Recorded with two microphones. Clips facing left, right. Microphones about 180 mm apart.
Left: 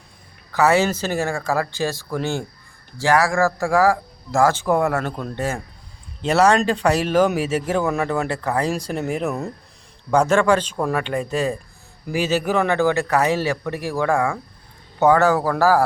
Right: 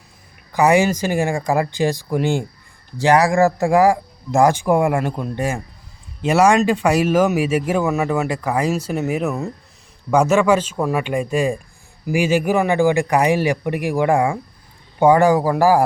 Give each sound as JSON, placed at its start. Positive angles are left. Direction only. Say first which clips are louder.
{"t": 0.5, "sound": "speech", "louder": "right 2 dB", "side_deg": -15}